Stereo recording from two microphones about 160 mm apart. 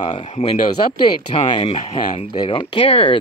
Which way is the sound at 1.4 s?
30° left (ahead or behind).